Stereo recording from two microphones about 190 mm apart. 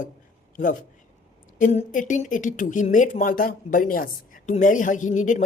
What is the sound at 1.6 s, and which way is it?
Speech, 40° left (ahead or behind).